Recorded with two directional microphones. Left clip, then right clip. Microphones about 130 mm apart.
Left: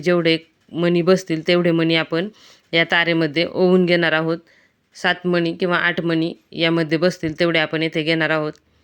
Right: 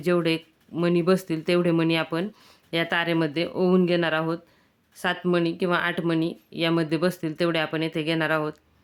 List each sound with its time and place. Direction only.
0.0 s speech: 25° left (ahead or behind)